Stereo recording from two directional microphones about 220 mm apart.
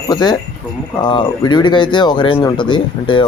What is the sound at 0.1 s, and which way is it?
A man's voice, 20° left (ahead or behind).